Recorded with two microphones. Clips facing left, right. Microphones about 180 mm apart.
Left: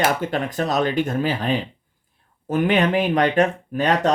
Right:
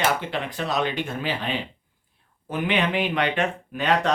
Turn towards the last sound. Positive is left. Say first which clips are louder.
# left 3 dB
turn(degrees=40)  # may be behind; listen again after turning